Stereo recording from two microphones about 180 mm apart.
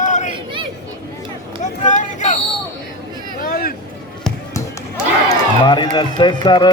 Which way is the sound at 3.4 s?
55° left (ahead or behind).